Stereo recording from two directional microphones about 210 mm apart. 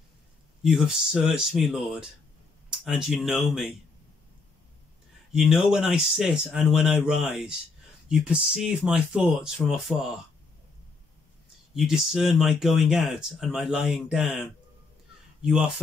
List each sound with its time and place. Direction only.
0.6 s speech: 5° right (ahead or behind)
5.3 s speech: centre (ahead or behind)
11.7 s speech: centre (ahead or behind)